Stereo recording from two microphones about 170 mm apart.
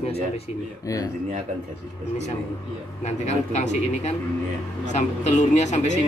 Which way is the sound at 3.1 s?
40° left (ahead or behind).